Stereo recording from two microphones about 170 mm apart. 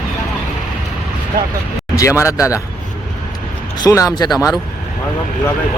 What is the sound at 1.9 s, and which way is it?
Speech, 15° left (ahead or behind).